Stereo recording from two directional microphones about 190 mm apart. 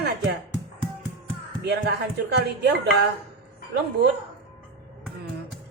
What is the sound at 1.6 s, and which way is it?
Speech, 60° right (ahead or behind).